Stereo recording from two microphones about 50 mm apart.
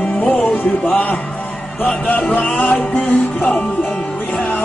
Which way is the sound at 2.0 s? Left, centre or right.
Left.